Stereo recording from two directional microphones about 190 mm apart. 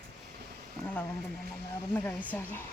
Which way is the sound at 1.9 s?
10° left (ahead or behind).